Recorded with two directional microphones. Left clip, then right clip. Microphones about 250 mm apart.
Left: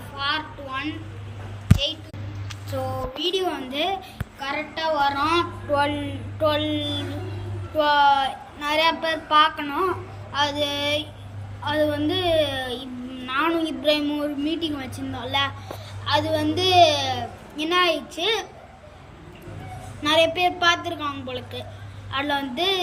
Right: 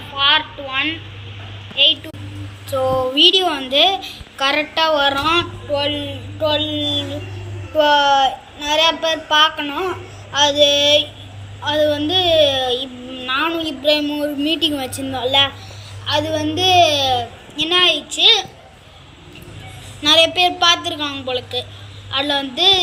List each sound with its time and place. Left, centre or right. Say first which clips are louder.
0.2 s a sound: right 11 dB; centre
2.7 s speech: right 13 dB; centre
20.0 s speech: right 6 dB; centre